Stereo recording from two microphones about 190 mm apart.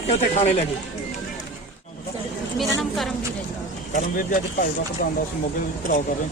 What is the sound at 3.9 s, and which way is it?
Speech, 40° left (ahead or behind).